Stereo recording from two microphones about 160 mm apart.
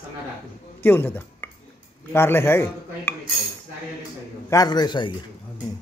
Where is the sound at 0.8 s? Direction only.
10° left (ahead or behind).